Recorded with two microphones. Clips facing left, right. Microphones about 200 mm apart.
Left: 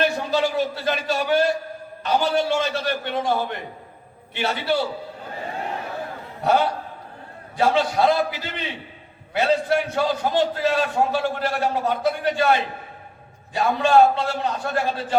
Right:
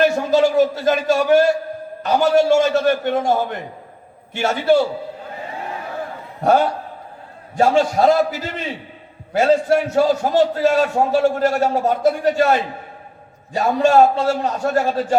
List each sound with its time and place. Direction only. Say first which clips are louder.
0.0 s a sound: right 7 dB; 45° right (ahead or behind)
2.0 s a man's voice: right 6 dB; 45° right (ahead or behind)
6.4 s a man's voice: right 4 dB; 50° right (ahead or behind)